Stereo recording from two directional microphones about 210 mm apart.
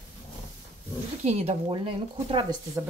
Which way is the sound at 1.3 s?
30° right (ahead or behind).